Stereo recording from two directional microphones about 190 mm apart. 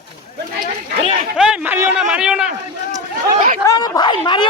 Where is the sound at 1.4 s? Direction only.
10° right (ahead or behind).